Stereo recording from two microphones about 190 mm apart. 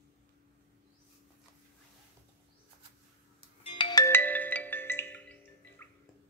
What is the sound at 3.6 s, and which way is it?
Marimba, 20° left (ahead or behind).